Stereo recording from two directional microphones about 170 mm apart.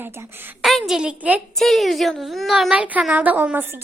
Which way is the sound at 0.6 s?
Centre (ahead or behind).